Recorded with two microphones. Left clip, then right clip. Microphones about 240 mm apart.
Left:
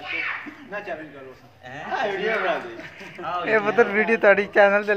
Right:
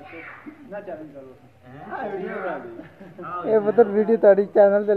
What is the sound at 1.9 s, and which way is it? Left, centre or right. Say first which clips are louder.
Speech: left 6 dB; left.